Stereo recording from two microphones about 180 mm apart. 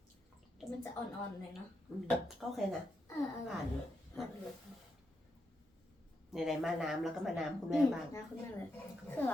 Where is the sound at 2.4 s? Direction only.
5° left (ahead or behind).